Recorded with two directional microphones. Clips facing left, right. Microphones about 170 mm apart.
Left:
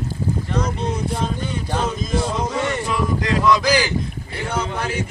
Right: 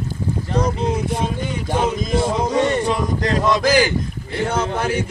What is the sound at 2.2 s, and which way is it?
Speech, 30° right (ahead or behind).